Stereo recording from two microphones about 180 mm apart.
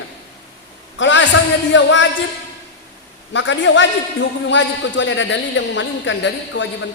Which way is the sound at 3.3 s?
90° left.